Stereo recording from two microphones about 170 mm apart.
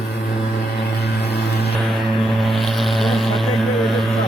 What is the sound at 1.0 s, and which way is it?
Vehicle, 75° left (ahead or behind).